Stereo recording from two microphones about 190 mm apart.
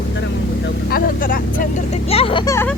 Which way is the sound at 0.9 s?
50° left (ahead or behind).